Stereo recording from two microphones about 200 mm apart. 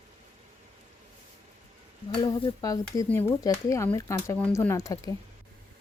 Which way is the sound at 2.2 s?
25° left (ahead or behind).